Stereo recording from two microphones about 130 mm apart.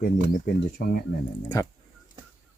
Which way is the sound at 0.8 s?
90° left.